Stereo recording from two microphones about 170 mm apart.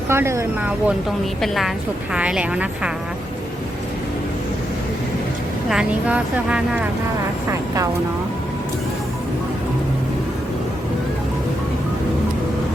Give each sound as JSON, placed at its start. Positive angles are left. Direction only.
{"t": 0.1, "sound": "a woman's voice", "side_deg": -15}
{"t": 1.4, "sound": "a woman's voice", "side_deg": 0}
{"t": 5.6, "sound": "a woman's voice", "side_deg": -5}